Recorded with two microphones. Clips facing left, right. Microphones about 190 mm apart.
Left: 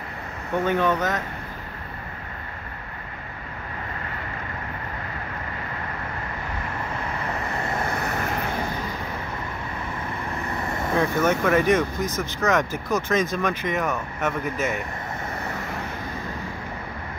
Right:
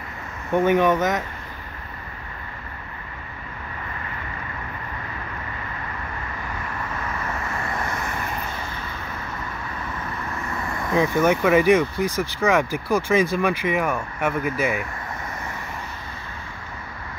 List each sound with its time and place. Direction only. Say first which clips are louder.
0.7 s speech: right 4 dB; 15° right (ahead or behind)
7.2 s vehicle: left 1 dB; 30° left (ahead or behind)
10.6 s vehicle: left 2 dB; 25° left (ahead or behind)
11.0 s speech: right 3 dB; 10° right (ahead or behind)